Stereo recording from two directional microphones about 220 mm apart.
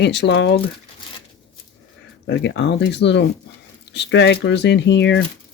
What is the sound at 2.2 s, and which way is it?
Speech, 55° left (ahead or behind).